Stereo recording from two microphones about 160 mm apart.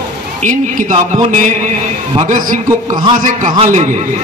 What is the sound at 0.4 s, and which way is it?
Speech, 50° right (ahead or behind).